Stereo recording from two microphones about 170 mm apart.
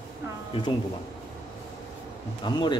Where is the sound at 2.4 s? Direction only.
25° left (ahead or behind).